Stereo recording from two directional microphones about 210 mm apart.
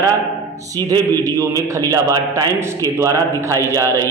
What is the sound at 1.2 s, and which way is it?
A man's voice, 15° right (ahead or behind).